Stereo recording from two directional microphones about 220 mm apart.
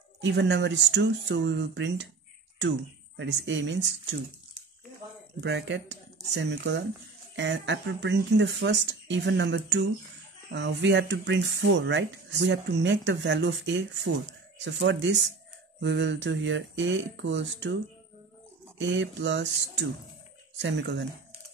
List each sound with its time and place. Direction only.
0.2 s speech: 55° right (ahead or behind)
3.2 s speech: 55° right (ahead or behind)
5.4 s speech: 55° right (ahead or behind)
18.8 s speech: 55° right (ahead or behind)